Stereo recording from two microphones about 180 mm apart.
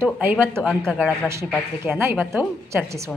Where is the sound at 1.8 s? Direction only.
15° right (ahead or behind).